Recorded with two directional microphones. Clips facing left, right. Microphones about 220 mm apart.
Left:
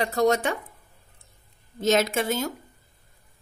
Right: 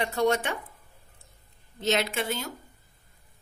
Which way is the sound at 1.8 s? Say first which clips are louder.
Left 5 dB; 45° left (ahead or behind).